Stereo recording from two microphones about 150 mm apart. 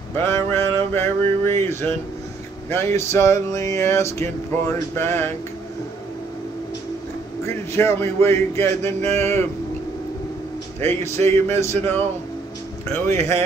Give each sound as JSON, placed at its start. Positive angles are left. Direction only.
{"t": 0.1, "sound": "speech", "side_deg": 15}
{"t": 2.7, "sound": "a sound", "side_deg": 15}
{"t": 7.4, "sound": "a man's voice", "side_deg": 15}
{"t": 11.0, "sound": "speech", "side_deg": 15}
{"t": 13.1, "sound": "speech", "side_deg": -45}